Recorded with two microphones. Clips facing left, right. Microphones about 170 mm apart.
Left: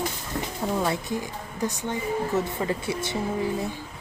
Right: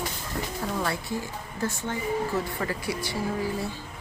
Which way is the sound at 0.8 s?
20° left (ahead or behind).